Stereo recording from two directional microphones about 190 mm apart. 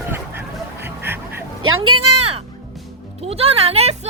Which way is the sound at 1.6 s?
90° right.